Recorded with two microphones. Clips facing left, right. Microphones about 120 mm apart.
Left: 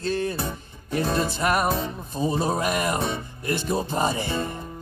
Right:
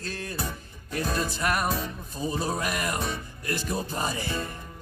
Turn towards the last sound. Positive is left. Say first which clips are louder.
# left 6 dB
turn(degrees=25)  # may be behind; listen again after turning